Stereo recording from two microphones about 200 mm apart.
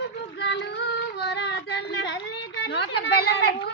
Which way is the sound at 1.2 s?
60° left (ahead or behind).